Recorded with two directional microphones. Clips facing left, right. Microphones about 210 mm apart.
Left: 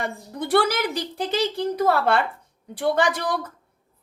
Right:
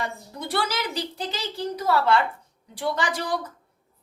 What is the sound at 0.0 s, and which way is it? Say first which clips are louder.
A woman's voice: left 3 dB; 55° left (ahead or behind).